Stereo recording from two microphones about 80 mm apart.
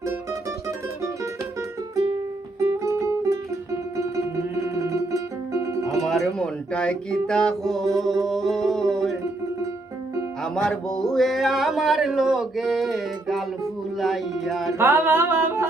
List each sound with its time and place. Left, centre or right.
2.6 s music: right
6.0 s music: centre
10.4 s a sound: centre
14.0 s speech: centre
14.8 s music: right